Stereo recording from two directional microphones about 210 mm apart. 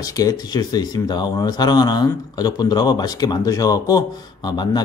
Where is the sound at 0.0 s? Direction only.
15° left (ahead or behind).